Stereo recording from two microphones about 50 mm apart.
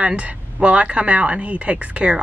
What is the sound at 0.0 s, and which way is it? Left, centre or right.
A woman's voice, right.